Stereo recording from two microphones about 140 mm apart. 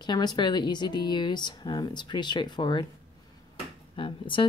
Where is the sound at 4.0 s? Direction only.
35° left (ahead or behind).